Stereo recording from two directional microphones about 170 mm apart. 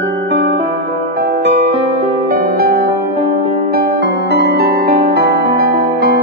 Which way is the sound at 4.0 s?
90° right.